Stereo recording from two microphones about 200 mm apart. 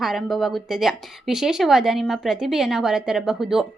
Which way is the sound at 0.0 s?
Centre (ahead or behind).